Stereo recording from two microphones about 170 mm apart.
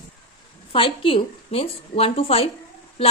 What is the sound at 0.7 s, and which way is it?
A woman's voice, 30° left (ahead or behind).